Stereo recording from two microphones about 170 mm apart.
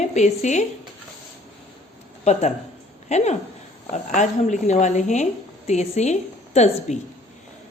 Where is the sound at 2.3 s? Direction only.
40° left (ahead or behind).